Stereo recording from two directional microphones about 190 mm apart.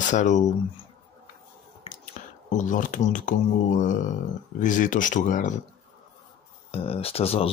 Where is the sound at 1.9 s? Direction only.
40° left (ahead or behind).